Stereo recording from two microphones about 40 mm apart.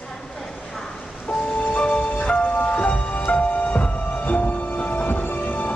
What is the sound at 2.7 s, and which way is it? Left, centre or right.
Music, left.